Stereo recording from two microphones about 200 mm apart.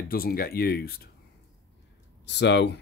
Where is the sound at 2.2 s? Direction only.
60° left (ahead or behind).